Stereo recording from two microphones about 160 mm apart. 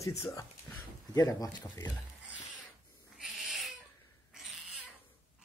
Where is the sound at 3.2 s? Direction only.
5° right (ahead or behind).